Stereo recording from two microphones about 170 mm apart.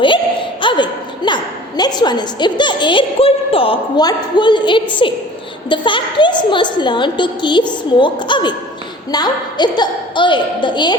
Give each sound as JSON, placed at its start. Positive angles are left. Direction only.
{"t": 0.6, "sound": "a woman's voice", "side_deg": 30}